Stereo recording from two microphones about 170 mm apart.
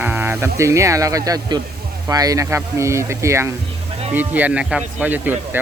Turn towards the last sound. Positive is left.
turn(degrees=-10)  # may be behind; listen again after turning